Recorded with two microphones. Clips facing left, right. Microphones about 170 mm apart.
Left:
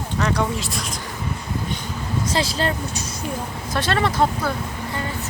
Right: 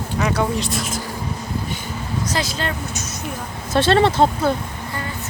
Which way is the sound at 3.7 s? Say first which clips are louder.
Right 7 dB; 25° right (ahead or behind).